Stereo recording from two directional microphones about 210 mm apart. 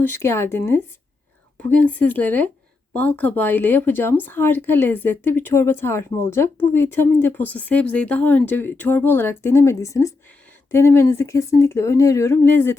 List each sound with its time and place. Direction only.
0.0 s speech: 10° left (ahead or behind)